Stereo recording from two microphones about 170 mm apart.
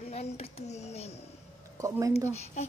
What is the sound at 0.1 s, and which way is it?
Speech, 40° left (ahead or behind).